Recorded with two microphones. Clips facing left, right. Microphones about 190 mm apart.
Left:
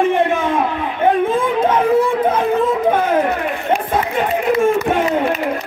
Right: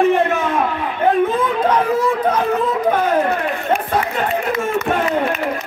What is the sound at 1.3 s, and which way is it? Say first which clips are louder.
Chatter: left 1 dB; 25° left (ahead or behind).